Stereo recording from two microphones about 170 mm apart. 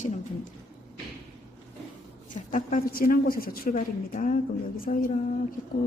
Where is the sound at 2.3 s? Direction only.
50° left (ahead or behind).